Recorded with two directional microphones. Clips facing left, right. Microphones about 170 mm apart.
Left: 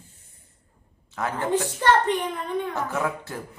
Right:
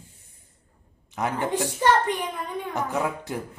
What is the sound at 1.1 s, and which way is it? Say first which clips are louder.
Speech: left 1 dB; 15° right (ahead or behind).